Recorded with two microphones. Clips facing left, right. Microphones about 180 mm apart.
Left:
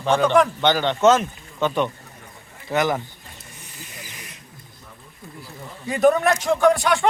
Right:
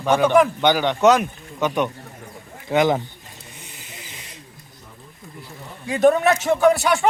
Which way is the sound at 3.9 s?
25° right (ahead or behind).